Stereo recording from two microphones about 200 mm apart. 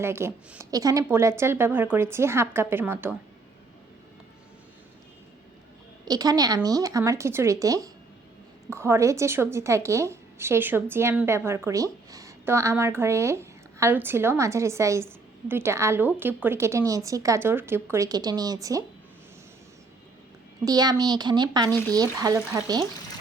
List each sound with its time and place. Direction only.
0.0 s a woman's voice: 15° right (ahead or behind)
6.1 s a woman's voice: 20° right (ahead or behind)
20.7 s speech: 20° right (ahead or behind)